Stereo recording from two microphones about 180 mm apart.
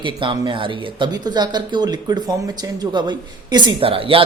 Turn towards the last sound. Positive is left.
turn(degrees=-30)  # may be behind; listen again after turning